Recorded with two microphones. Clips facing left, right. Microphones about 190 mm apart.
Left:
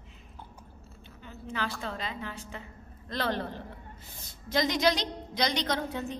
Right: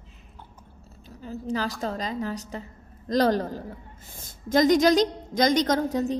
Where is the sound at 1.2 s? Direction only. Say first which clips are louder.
Right 7 dB; 35° right (ahead or behind).